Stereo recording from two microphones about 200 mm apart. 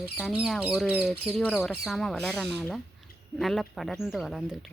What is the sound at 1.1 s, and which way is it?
Speech, 30° right (ahead or behind).